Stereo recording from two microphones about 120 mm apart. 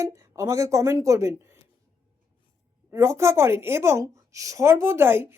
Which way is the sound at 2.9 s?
25° right (ahead or behind).